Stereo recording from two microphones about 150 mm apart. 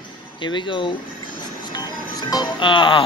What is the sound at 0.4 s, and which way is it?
Speech, 30° left (ahead or behind).